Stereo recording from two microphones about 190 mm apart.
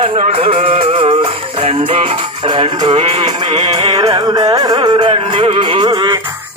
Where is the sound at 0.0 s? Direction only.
30° right (ahead or behind).